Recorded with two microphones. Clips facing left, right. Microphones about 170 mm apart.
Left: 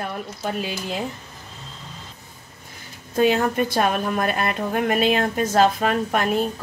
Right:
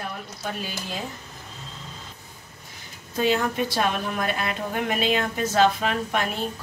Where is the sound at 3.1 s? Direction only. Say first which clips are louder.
Left 4 dB; 55° left (ahead or behind).